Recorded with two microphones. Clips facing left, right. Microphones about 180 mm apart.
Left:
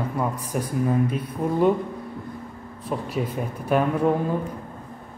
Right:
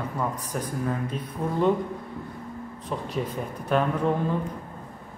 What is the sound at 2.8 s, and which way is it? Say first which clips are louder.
A woman's voice: left 3 dB; 10° left (ahead or behind).